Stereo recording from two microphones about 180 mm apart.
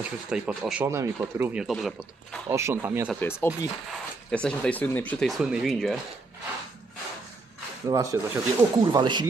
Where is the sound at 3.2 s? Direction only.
10° left (ahead or behind).